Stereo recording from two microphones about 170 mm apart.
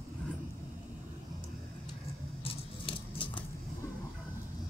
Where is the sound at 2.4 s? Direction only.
30° left (ahead or behind).